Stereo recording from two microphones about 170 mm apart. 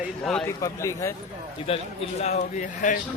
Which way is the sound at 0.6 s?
15° left (ahead or behind).